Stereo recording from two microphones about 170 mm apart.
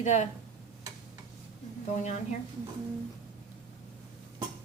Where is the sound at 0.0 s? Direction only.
45° left (ahead or behind).